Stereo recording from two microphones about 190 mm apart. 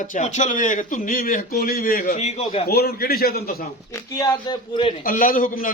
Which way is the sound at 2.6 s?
55° left (ahead or behind).